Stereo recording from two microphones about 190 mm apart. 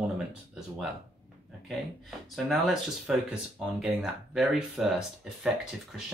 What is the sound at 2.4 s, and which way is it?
Speech, centre (ahead or behind).